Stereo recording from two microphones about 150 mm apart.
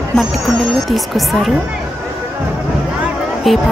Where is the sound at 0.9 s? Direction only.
Centre (ahead or behind).